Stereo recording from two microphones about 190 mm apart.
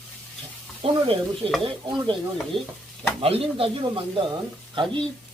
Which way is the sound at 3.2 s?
30° right (ahead or behind).